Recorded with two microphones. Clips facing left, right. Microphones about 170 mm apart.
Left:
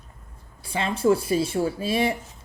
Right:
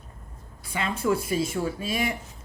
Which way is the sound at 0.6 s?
30° left (ahead or behind).